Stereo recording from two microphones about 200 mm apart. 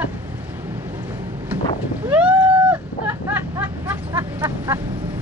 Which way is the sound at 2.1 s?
5° right (ahead or behind).